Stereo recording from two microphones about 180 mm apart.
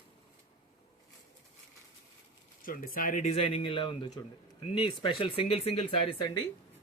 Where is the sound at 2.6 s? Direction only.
50° left (ahead or behind); by 5.9 s 35° left (ahead or behind).